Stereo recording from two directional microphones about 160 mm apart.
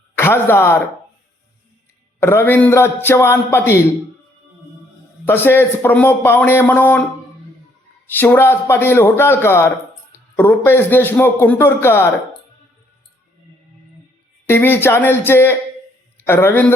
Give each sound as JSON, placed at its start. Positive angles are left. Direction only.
{"t": 0.2, "sound": "speech", "side_deg": 15}
{"t": 2.2, "sound": "a man's voice", "side_deg": 15}
{"t": 5.2, "sound": "a man's voice", "side_deg": 15}
{"t": 8.1, "sound": "a man's voice", "side_deg": 15}
{"t": 14.4, "sound": "a man's voice", "side_deg": 15}